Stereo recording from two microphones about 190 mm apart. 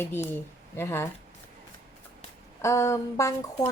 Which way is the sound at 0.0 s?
10° left (ahead or behind).